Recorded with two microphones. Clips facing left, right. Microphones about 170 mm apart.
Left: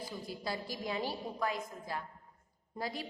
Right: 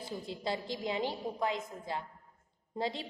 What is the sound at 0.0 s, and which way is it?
A woman's voice, 25° right (ahead or behind).